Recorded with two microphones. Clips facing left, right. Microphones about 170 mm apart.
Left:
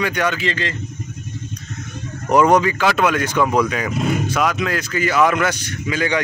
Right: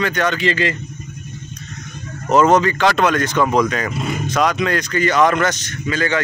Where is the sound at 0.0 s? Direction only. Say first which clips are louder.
Right 1 dB; 10° left (ahead or behind).